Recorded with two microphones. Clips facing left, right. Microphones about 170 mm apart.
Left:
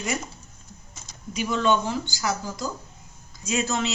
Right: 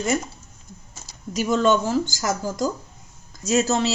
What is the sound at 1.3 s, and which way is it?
A woman's voice, 40° right (ahead or behind).